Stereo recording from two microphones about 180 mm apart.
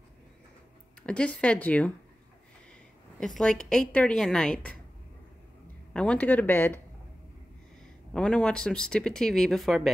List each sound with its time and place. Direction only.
1.0 s speech: 5° left (ahead or behind)
3.2 s speech: 5° left (ahead or behind)
5.9 s speech: 5° left (ahead or behind)
8.1 s speech: 5° left (ahead or behind)